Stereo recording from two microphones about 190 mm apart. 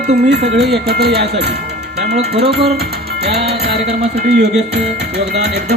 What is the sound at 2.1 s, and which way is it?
Speech, 35° right (ahead or behind).